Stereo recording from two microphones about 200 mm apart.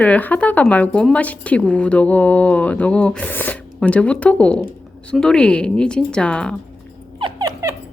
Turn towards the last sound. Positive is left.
turn(degrees=-20)  # may be behind; listen again after turning